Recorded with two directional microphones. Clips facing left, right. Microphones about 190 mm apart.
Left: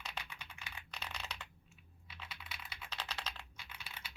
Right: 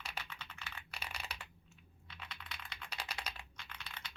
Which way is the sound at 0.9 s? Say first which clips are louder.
Left 2 dB; 10° right (ahead or behind).